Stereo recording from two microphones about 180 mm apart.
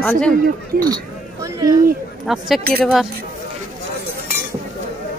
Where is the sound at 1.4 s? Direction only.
20° right (ahead or behind).